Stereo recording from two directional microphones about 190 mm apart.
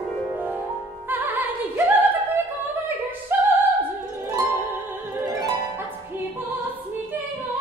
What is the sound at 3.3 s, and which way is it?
Opera, 10° right (ahead or behind).